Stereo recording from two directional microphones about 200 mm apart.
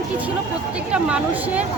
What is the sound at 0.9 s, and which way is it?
Speech, 5° right (ahead or behind).